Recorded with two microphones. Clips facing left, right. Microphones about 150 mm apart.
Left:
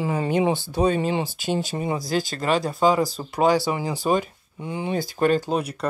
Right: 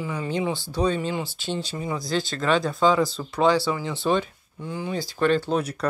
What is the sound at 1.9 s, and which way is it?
Speech, 40° left (ahead or behind).